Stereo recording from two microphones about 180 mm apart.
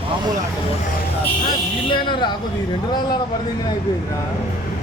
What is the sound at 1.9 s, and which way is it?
Speech, 25° left (ahead or behind).